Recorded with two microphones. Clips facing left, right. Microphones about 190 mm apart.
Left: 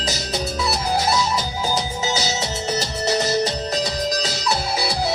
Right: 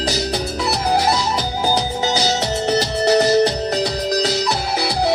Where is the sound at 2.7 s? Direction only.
60° right (ahead or behind).